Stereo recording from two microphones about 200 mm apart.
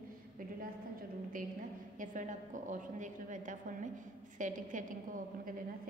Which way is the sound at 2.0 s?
40° right (ahead or behind).